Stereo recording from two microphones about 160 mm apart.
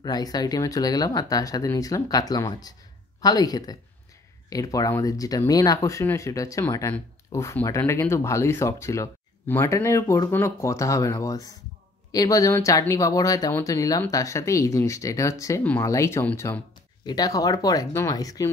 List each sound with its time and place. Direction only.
0.0 s speech: 25° left (ahead or behind)